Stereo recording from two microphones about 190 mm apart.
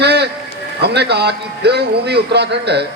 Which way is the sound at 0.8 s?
60° right (ahead or behind).